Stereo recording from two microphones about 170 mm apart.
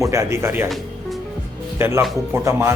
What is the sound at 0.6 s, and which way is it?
Music, centre (ahead or behind).